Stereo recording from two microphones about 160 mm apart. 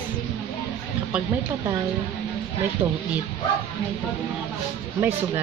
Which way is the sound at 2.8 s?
40° right (ahead or behind).